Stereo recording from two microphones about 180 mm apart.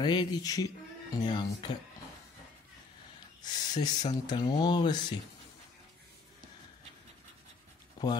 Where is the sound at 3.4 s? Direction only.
20° left (ahead or behind).